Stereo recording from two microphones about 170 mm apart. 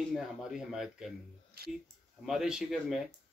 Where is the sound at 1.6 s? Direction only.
65° right (ahead or behind).